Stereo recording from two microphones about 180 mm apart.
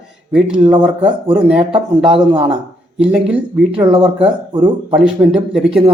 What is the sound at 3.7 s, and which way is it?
Speech, 30° right (ahead or behind).